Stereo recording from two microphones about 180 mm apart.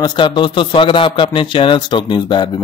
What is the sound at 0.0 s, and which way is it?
A man's voice, 25° left (ahead or behind).